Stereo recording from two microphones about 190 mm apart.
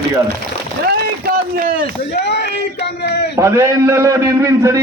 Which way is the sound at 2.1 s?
65° left (ahead or behind).